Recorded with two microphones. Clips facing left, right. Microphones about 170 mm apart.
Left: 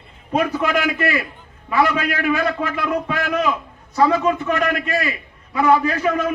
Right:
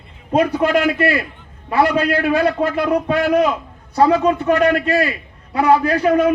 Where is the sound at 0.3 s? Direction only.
35° right (ahead or behind).